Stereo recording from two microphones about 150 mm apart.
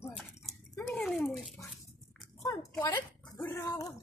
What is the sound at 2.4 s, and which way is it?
Speech, 20° left (ahead or behind).